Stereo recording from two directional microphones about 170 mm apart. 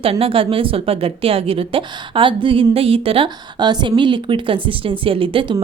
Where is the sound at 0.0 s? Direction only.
35° right (ahead or behind).